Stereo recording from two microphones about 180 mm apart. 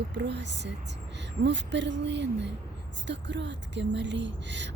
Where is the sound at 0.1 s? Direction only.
75° right (ahead or behind).